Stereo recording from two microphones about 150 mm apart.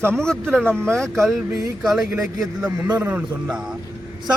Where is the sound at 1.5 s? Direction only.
20° right (ahead or behind).